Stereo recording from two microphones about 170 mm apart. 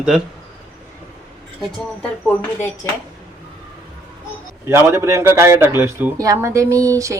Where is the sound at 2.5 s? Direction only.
15° left (ahead or behind).